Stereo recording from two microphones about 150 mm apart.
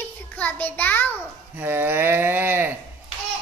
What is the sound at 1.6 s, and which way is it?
Speech, 15° right (ahead or behind).